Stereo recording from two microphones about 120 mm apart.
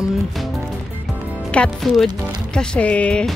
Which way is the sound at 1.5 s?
10° left (ahead or behind).